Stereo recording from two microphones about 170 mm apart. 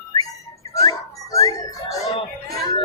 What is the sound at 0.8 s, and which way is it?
Music, 20° left (ahead or behind).